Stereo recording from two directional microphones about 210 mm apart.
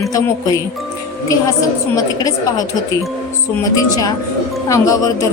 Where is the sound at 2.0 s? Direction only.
15° left (ahead or behind).